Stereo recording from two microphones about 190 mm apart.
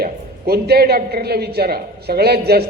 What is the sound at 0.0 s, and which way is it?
A man's voice, 55° right (ahead or behind).